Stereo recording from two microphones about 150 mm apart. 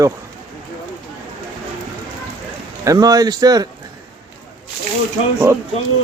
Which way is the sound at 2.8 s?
25° right (ahead or behind).